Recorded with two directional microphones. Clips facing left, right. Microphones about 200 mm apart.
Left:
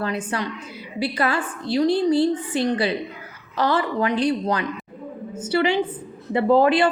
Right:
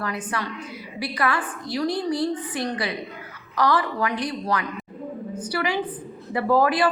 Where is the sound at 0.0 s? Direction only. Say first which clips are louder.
Left 3 dB; 25° left (ahead or behind).